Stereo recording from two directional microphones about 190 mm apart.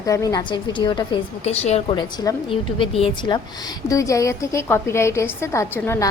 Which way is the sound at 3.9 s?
15° left (ahead or behind).